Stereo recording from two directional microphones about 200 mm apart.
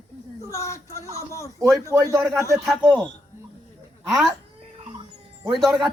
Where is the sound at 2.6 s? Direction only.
Centre (ahead or behind).